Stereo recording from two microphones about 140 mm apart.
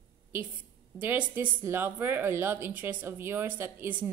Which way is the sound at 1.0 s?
10° right (ahead or behind).